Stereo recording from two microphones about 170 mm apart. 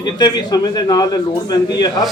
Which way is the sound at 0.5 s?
25° left (ahead or behind).